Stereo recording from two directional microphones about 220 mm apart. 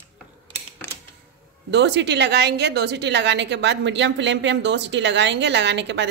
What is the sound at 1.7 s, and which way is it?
A woman's voice, 55° right (ahead or behind).